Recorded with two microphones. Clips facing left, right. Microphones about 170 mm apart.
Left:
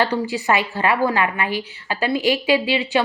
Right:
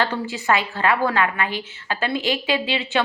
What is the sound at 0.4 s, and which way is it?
A woman's voice, 15° left (ahead or behind).